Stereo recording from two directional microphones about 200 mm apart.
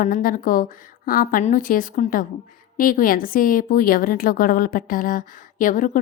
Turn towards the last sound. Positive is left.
turn(degrees=40)  # may be behind; listen again after turning